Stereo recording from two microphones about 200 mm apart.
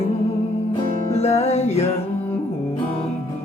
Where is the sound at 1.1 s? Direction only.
30° left (ahead or behind).